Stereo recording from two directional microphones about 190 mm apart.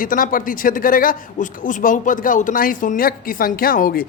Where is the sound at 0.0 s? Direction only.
45° left (ahead or behind).